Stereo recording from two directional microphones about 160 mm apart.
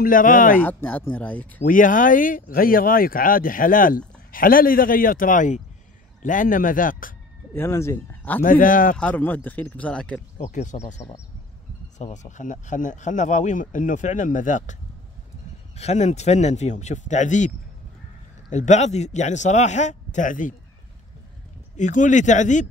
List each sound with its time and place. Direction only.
0.0 s speech: 60° left (ahead or behind)
0.6 s speech: 10° left (ahead or behind)
1.6 s speech: 60° left (ahead or behind)
7.5 s speech: 15° left (ahead or behind)
8.4 s speech: 55° left (ahead or behind)
8.9 s speech: 10° left (ahead or behind)
10.3 s speech: 50° left (ahead or behind)
12.0 s speech: 50° left (ahead or behind)
18.5 s speech: 45° left (ahead or behind)
21.7 s speech: 50° left (ahead or behind)